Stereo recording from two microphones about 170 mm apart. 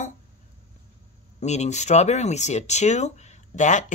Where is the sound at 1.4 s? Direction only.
40° left (ahead or behind).